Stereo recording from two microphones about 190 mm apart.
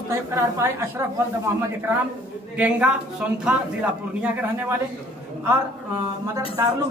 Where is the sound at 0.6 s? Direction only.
15° right (ahead or behind).